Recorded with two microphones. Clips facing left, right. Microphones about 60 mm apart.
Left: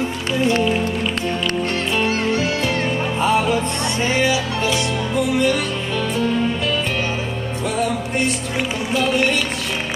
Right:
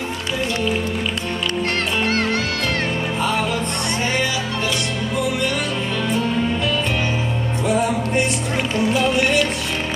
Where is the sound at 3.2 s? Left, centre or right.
Centre.